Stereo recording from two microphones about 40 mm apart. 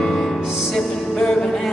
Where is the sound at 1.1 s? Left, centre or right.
Centre.